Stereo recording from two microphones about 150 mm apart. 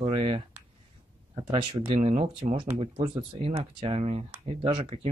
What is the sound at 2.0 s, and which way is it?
Speech, 50° right (ahead or behind).